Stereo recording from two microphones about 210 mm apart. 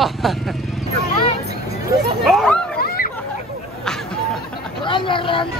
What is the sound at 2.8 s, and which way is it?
Hubbub, 45° left (ahead or behind).